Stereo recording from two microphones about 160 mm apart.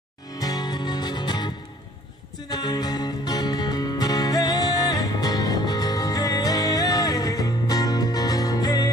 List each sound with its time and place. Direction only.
0.3 s music: 25° left (ahead or behind)
2.5 s music: 25° left (ahead or behind)